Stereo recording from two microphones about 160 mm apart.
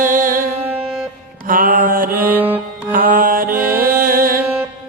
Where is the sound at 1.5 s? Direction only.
60° right (ahead or behind).